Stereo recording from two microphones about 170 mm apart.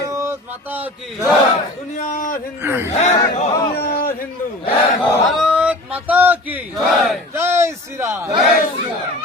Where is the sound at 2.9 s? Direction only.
40° left (ahead or behind).